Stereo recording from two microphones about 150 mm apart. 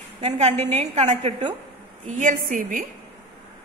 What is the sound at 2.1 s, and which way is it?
Speech, 60° right (ahead or behind).